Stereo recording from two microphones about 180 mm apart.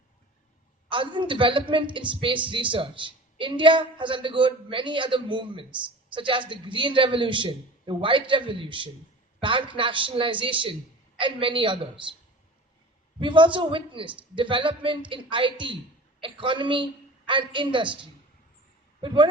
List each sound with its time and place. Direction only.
0.9 s a woman's voice: 25° right (ahead or behind)
13.1 s a woman's voice: 25° right (ahead or behind)
19.0 s a woman's voice: 25° right (ahead or behind)